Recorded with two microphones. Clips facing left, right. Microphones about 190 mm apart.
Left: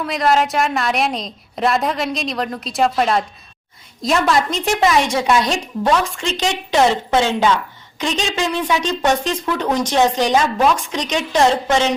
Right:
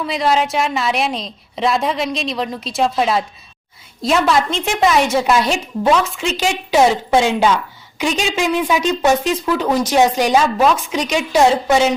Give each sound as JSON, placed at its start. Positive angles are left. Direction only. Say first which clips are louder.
{"t": 0.0, "sound": "a woman's voice", "louder": "even", "side_deg": 0}